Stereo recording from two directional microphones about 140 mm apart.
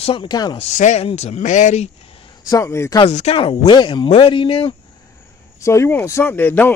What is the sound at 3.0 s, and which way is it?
Speech, 50° left (ahead or behind).